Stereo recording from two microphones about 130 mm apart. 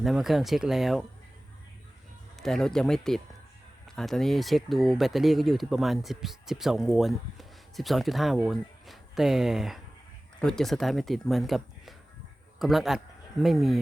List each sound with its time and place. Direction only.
0.0 s speech: centre (ahead or behind)
2.4 s a man's voice: 5° left (ahead or behind)